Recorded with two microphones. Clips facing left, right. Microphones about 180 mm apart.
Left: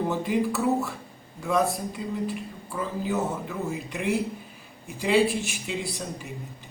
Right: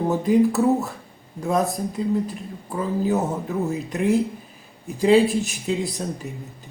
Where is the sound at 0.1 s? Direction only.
40° right (ahead or behind).